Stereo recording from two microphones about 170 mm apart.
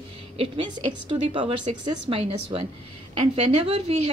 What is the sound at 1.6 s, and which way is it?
A woman's voice, 35° right (ahead or behind).